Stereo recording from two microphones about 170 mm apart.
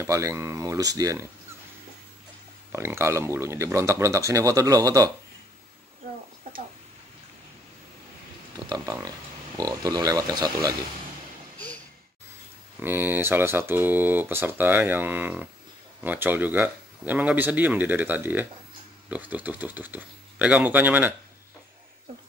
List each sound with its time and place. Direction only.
0.0 s speech: 20° right (ahead or behind)
2.7 s speech: 15° right (ahead or behind)
8.6 s speech: 20° right (ahead or behind)
12.8 s speech: 10° right (ahead or behind)